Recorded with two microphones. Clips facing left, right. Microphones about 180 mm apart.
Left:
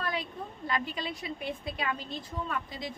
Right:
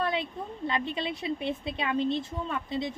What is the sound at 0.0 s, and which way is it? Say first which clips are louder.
Speech: right 5 dB; 25° right (ahead or behind).